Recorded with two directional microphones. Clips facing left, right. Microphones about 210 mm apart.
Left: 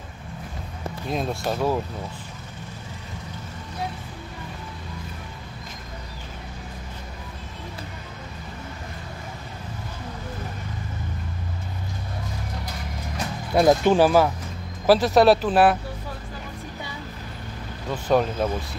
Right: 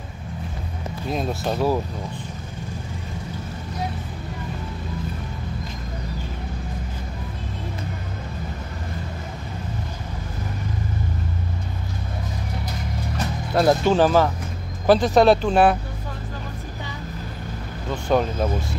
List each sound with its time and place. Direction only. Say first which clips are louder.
1.1 s speech: right 1 dB; centre (ahead or behind)
13.6 s speech: left 1 dB; 15° left (ahead or behind)
18.0 s speech: even; centre (ahead or behind)